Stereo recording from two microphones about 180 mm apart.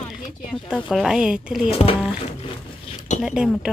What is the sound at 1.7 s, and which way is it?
Speech, 30° left (ahead or behind).